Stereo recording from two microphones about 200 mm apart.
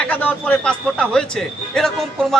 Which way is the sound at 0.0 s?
5° left (ahead or behind).